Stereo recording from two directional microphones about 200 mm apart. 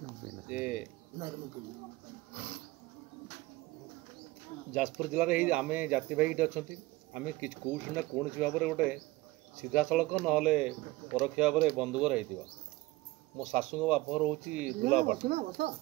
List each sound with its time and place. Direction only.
0.5 s speech: 5° right (ahead or behind)
2.3 s a sound: 55° right (ahead or behind)
4.7 s speech: 5° right (ahead or behind)
13.4 s speech: 5° right (ahead or behind)
15.2 s speech: 50° right (ahead or behind)